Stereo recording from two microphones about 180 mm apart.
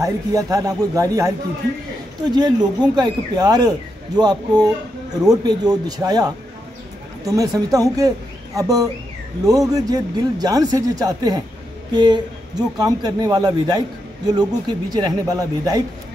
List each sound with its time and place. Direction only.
0.0 s a man's voice: 20° right (ahead or behind)
2.3 s a man's voice: 25° right (ahead or behind)